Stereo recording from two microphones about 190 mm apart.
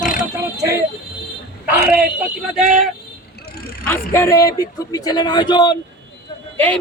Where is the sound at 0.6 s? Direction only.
15° right (ahead or behind).